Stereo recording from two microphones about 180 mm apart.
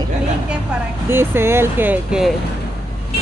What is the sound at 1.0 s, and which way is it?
Speech, 15° right (ahead or behind).